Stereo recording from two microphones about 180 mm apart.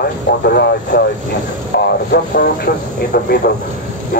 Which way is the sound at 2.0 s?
60° left (ahead or behind).